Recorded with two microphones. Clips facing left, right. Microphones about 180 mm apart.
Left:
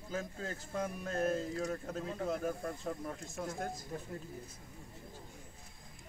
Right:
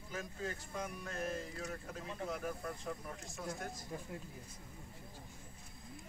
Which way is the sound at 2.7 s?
40° left (ahead or behind).